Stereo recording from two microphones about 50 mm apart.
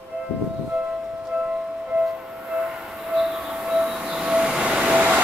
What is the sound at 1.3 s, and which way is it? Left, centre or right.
Music, right.